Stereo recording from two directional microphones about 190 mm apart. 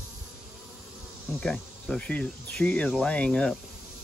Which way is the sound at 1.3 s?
5° left (ahead or behind).